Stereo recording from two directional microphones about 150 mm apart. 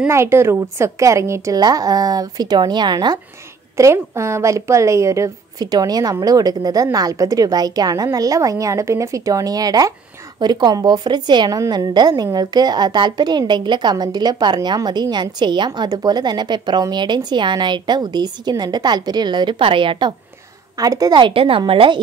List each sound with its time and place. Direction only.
0.1 s a woman's voice: 15° right (ahead or behind); by 22.0 s 35° right (ahead or behind)